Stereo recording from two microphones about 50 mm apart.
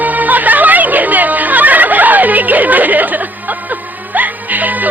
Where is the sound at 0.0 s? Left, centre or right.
Right.